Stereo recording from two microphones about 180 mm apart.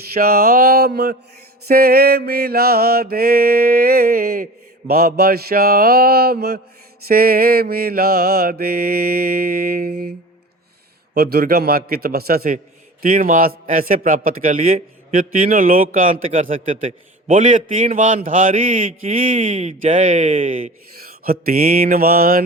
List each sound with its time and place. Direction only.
0.1 s mantra: 55° right (ahead or behind)
11.1 s mantra: 60° right (ahead or behind)
13.0 s a man's voice: 50° right (ahead or behind)
21.0 s mantra: 55° right (ahead or behind)